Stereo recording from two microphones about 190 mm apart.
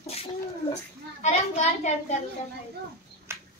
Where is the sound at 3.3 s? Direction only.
15° right (ahead or behind).